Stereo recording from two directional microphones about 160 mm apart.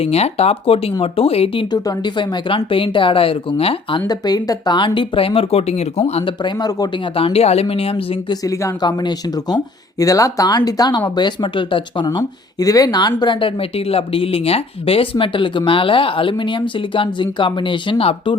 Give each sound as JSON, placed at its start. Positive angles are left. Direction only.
{"t": 0.0, "sound": "speech", "side_deg": 40}
{"t": 1.7, "sound": "speech", "side_deg": 25}
{"t": 8.4, "sound": "speech", "side_deg": 20}